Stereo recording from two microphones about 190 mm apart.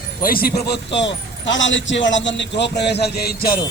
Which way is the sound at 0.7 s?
70° left (ahead or behind).